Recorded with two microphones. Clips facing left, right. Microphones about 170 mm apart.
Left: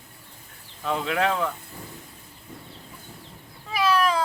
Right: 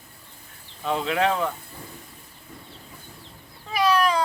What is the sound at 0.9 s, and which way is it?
Speech, centre (ahead or behind).